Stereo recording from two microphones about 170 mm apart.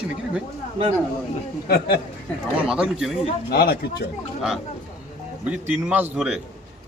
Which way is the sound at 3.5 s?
65° left (ahead or behind).